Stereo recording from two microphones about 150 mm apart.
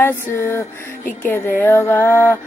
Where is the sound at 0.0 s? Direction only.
15° left (ahead or behind).